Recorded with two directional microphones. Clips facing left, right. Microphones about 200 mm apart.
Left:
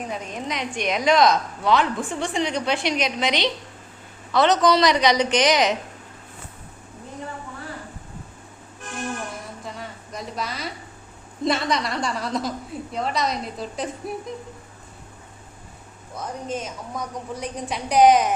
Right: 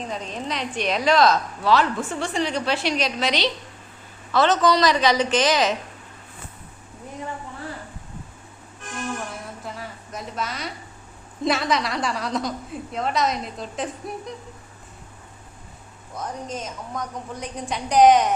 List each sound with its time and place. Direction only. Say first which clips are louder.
0.0 s a woman's voice: even; 10° left (ahead or behind)
9.6 s a sound: even; centre (ahead or behind)
11.4 s a woman's voice: even; centre (ahead or behind)
16.5 s a woman's voice: left 2 dB; centre (ahead or behind)